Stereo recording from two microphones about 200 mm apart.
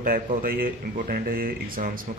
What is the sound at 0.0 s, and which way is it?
Speech, 45° right (ahead or behind).